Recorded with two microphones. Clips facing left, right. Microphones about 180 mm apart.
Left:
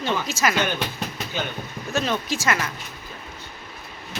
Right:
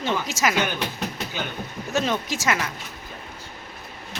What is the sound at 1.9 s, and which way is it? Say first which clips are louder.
Speech: even; 20° right (ahead or behind).